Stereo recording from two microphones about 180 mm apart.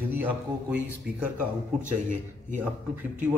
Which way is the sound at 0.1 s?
10° right (ahead or behind).